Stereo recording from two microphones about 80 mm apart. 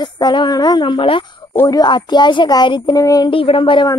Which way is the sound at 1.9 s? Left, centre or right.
Left.